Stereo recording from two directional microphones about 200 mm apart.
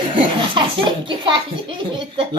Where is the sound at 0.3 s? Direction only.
25° right (ahead or behind).